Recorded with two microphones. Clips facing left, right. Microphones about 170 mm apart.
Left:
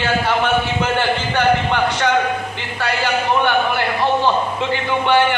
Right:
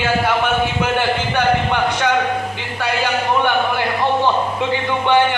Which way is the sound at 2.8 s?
15° right (ahead or behind).